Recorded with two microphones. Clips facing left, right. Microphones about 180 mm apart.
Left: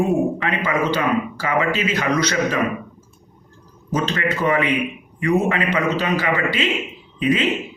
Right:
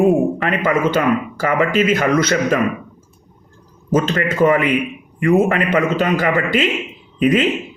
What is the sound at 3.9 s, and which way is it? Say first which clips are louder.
A man's voice: right 5 dB; 50° right (ahead or behind).